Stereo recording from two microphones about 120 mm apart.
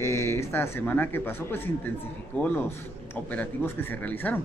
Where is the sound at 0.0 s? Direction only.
25° left (ahead or behind).